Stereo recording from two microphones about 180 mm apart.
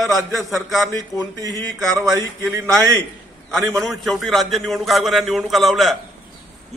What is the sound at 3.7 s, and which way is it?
A man's voice, centre (ahead or behind).